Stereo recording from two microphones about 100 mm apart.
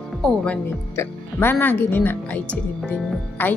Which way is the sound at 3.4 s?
20° left (ahead or behind).